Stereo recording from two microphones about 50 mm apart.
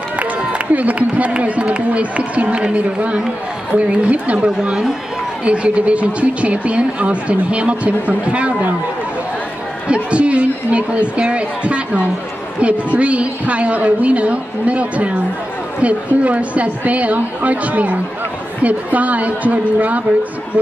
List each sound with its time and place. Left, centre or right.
0.7 s speech: right
9.8 s speech: right